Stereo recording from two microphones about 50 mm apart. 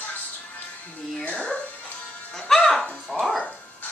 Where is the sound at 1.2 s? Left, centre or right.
Left.